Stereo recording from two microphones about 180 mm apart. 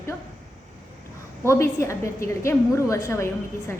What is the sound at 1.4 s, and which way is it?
A woman's voice, 15° left (ahead or behind).